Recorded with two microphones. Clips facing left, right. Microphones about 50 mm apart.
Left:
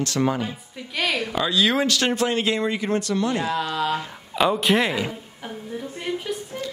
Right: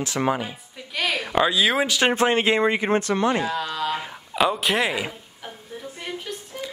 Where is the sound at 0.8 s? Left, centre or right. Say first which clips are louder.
Left 3 dB; centre.